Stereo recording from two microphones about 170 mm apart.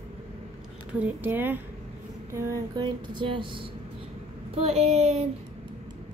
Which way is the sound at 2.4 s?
25° right (ahead or behind).